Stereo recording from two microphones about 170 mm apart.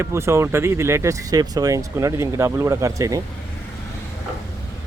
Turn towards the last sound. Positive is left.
turn(degrees=-20)  # may be behind; listen again after turning